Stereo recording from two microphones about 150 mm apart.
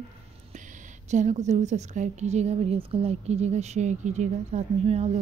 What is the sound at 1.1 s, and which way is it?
A woman's voice, 55° right (ahead or behind).